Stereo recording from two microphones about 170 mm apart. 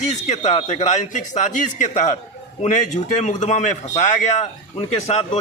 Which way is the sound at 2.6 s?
45° left (ahead or behind).